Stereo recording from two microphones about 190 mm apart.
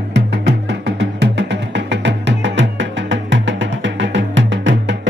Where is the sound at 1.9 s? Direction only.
70° right (ahead or behind).